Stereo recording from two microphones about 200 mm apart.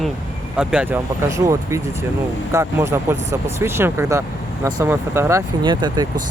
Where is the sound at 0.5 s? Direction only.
5° right (ahead or behind).